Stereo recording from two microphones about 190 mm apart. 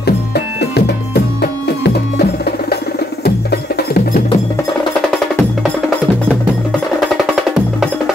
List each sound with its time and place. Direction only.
0.0 s music: 60° left (ahead or behind)